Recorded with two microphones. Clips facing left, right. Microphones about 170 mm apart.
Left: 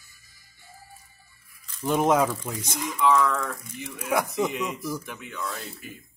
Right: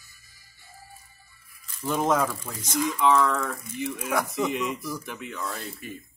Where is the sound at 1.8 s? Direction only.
15° left (ahead or behind).